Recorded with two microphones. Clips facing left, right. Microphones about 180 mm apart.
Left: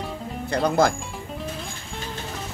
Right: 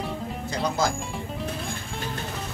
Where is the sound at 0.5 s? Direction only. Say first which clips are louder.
Left 6 dB; 60° left (ahead or behind).